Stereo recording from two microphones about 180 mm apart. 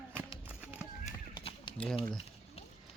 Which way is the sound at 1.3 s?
25° left (ahead or behind).